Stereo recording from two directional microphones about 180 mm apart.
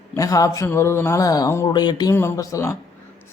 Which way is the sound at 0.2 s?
20° left (ahead or behind).